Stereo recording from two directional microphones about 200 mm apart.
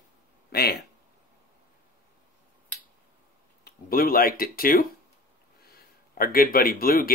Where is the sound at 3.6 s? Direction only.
45° left (ahead or behind).